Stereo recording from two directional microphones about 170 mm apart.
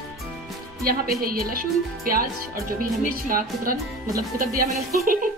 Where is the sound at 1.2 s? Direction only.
60° right (ahead or behind).